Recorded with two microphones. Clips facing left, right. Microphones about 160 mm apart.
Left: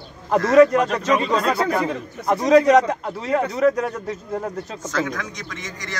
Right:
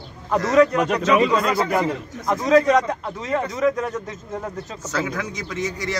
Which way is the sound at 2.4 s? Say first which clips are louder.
Left 2 dB; 40° left (ahead or behind).